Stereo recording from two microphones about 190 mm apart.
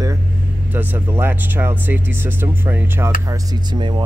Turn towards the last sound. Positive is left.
turn(degrees=-25)  # may be behind; listen again after turning